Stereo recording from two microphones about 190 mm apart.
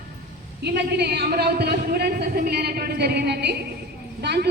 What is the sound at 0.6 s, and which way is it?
A man's voice, 55° right (ahead or behind).